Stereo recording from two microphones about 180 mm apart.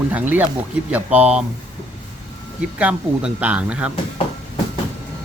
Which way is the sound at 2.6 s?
5° right (ahead or behind).